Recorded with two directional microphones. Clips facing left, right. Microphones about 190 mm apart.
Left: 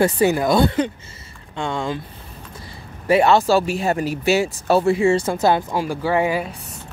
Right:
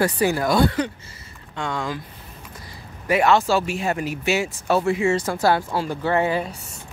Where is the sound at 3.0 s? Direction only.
30° left (ahead or behind); by 6.5 s 10° left (ahead or behind).